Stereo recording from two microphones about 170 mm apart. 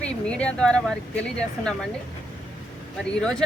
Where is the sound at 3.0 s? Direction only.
5° left (ahead or behind).